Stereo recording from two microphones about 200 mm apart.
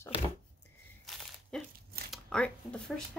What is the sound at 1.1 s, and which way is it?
Crumpling, centre (ahead or behind).